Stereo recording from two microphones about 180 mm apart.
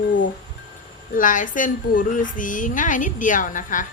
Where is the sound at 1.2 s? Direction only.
45° left (ahead or behind).